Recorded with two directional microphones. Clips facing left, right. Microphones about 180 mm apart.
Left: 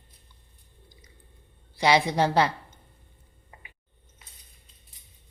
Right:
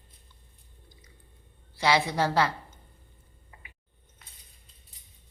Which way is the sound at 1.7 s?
15° left (ahead or behind).